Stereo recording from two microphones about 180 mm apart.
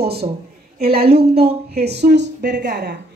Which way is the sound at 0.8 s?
60° right (ahead or behind).